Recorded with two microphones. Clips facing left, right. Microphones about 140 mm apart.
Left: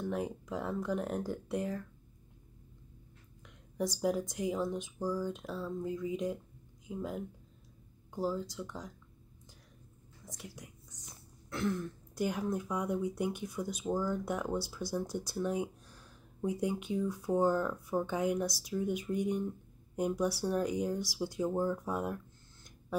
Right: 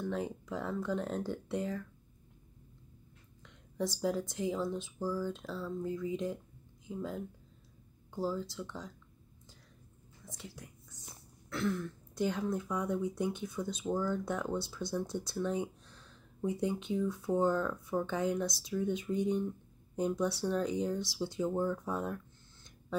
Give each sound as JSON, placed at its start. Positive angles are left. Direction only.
{"t": 0.0, "sound": "speech", "side_deg": 15}
{"t": 3.4, "sound": "speech", "side_deg": 15}
{"t": 10.2, "sound": "whispering", "side_deg": 15}
{"t": 11.5, "sound": "speech", "side_deg": 15}